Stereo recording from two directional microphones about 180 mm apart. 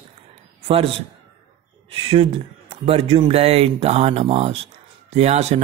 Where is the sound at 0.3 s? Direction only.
30° right (ahead or behind).